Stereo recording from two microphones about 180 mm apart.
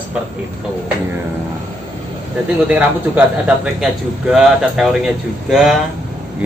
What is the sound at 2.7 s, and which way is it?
A man's voice, 10° right (ahead or behind).